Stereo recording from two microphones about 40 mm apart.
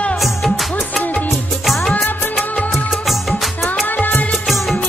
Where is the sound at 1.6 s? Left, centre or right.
Centre.